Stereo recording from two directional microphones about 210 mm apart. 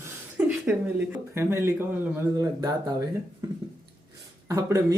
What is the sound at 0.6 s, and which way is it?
Speech, 10° right (ahead or behind).